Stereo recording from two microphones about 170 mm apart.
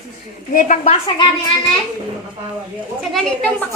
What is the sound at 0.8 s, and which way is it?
Speech, 35° left (ahead or behind).